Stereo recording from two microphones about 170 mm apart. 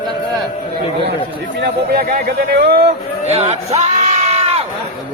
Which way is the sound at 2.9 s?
40° right (ahead or behind).